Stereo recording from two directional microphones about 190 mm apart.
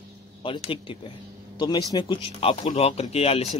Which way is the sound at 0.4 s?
30° left (ahead or behind).